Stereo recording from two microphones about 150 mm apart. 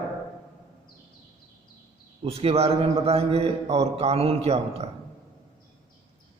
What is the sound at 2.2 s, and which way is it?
A man's voice, 40° right (ahead or behind).